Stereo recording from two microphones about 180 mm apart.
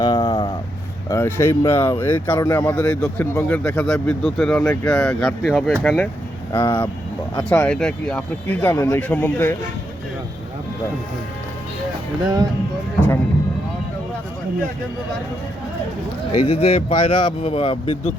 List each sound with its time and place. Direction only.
0.0 s a sound: 20° left (ahead or behind)
1.1 s speech: 15° left (ahead or behind)
16.3 s speech: 35° left (ahead or behind)